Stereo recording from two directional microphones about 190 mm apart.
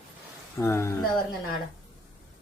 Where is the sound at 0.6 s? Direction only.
15° left (ahead or behind).